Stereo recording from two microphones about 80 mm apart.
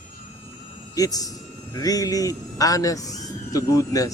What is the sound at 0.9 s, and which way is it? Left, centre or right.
A man's voice, left.